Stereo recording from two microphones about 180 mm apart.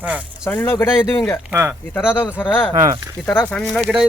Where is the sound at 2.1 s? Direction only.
10° left (ahead or behind).